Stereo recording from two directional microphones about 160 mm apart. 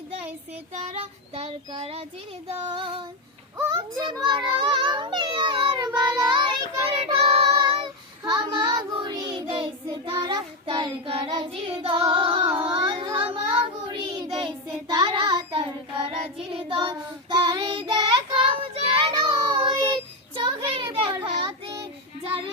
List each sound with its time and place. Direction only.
0.7 s child singing: 45° right (ahead or behind)
3.7 s children playing: 25° right (ahead or behind)
10.1 s child singing: 25° right (ahead or behind)
12.6 s a sound: 30° right (ahead or behind)
13.8 s child singing: 30° right (ahead or behind)